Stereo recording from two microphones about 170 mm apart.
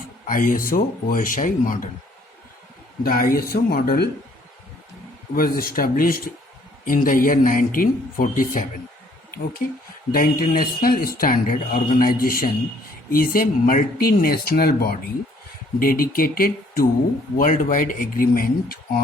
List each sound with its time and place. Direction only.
0.3 s a man's voice: 50° left (ahead or behind)
3.0 s speech: 60° left (ahead or behind)
5.3 s a man's voice: 60° left (ahead or behind)